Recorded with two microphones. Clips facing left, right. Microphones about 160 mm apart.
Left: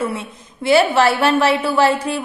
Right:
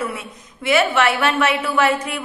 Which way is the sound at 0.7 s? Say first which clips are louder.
Left 4 dB; 35° left (ahead or behind).